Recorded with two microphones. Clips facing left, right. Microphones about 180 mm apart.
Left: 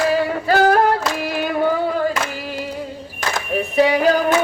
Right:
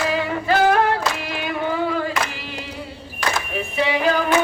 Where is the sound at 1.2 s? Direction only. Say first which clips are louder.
Left 5 dB; 45° left (ahead or behind).